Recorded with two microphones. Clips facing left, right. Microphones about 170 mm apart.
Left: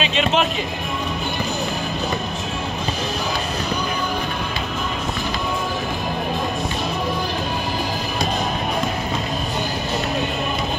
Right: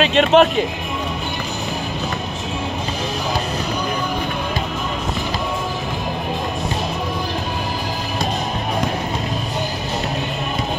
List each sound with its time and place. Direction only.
0.0 s speech: 55° right (ahead or behind)